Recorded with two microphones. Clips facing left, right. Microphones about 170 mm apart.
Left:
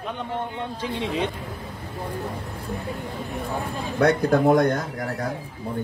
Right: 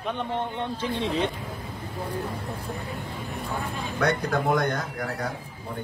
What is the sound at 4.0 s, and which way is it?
Speech, 35° left (ahead or behind).